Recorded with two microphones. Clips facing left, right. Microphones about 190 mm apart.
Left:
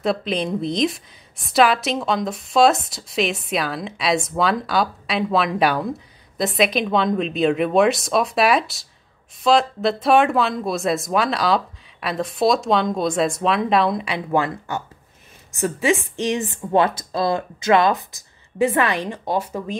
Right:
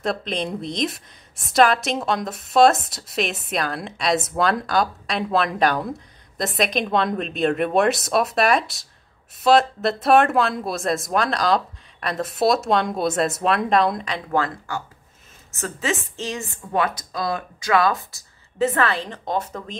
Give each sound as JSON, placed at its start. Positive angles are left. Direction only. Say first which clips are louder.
{"t": 0.0, "sound": "a woman's voice", "louder": "left 3 dB", "side_deg": 5}